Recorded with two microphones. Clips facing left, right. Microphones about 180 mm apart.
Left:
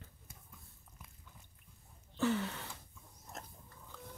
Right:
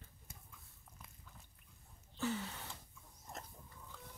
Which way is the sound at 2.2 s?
75° left (ahead or behind).